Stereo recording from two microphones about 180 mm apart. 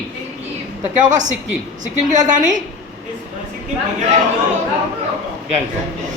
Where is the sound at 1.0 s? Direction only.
45° right (ahead or behind).